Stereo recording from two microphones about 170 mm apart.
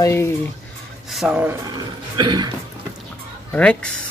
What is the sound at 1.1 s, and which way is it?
Speech, 5° right (ahead or behind).